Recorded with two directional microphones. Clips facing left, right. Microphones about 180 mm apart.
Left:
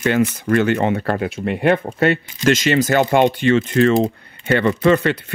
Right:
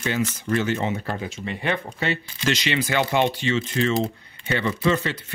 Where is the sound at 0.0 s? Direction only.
60° left (ahead or behind).